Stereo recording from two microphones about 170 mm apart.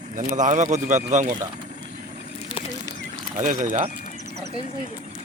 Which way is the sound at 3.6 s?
45° right (ahead or behind).